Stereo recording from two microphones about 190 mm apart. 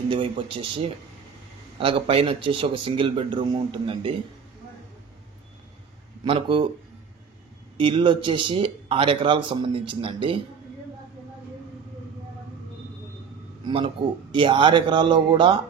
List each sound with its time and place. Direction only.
0.1 s speech: 30° right (ahead or behind)
6.2 s speech: 25° right (ahead or behind)
7.7 s speech: 25° right (ahead or behind)
13.7 s speech: 25° right (ahead or behind)